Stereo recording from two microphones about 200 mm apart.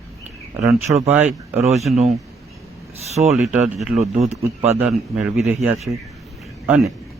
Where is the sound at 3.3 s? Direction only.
5° right (ahead or behind).